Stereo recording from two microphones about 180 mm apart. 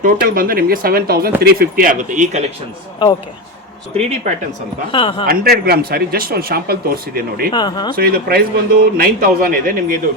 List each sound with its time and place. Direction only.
0.0 s a man's voice: 50° right (ahead or behind)
4.3 s speech: 40° right (ahead or behind)
4.9 s speech: 30° left (ahead or behind)
5.2 s a man's voice: 55° right (ahead or behind)
7.5 s speech: 25° left (ahead or behind)
7.9 s a man's voice: 60° right (ahead or behind)